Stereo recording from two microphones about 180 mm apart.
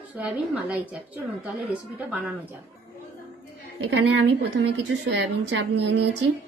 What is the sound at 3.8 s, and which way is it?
A woman's voice, 80° right.